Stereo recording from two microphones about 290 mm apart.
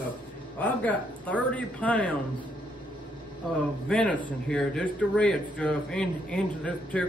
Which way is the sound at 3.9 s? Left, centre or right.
Centre.